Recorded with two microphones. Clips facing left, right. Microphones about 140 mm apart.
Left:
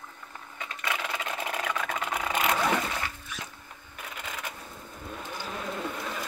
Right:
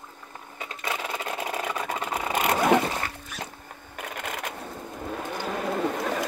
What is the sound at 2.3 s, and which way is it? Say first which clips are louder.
Vehicle: right 6 dB; 45° right (ahead or behind).